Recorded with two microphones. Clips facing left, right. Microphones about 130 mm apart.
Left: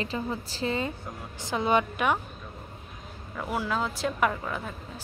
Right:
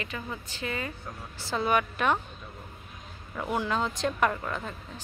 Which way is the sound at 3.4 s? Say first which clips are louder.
Right 1 dB; 5° left (ahead or behind).